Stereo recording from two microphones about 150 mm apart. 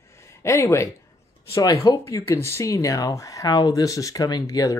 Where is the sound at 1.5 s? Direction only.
25° left (ahead or behind).